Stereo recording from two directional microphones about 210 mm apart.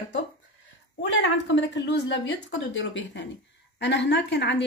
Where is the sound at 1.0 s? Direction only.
60° left (ahead or behind).